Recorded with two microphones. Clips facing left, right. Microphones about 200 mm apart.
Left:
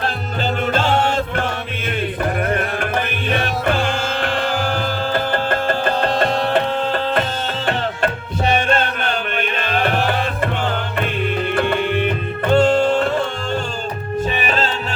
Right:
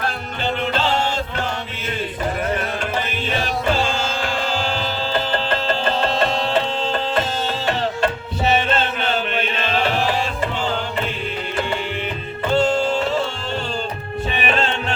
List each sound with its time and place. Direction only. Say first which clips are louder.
0.7 s music: left 5 dB; 50° left (ahead or behind)
3.2 s music: left 1 dB; 55° left (ahead or behind)
8.6 s music: left 2 dB; 50° left (ahead or behind)
11.5 s music: left 5 dB; 55° left (ahead or behind)
14.3 s music: even; 40° left (ahead or behind)